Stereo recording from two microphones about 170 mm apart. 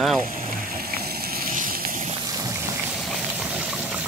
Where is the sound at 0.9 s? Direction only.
65° right (ahead or behind).